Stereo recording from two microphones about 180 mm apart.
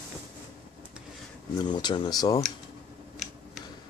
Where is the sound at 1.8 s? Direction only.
25° left (ahead or behind).